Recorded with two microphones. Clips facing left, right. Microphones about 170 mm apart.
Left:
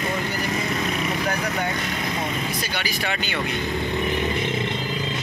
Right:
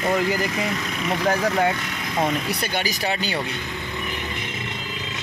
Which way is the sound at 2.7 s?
40° right (ahead or behind).